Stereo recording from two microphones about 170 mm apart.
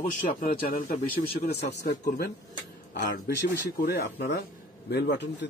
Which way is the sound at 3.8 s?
75° left (ahead or behind).